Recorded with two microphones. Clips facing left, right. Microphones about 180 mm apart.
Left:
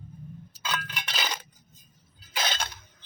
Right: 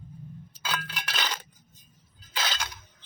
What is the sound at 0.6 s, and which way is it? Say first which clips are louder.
Chink: even; 5° right (ahead or behind).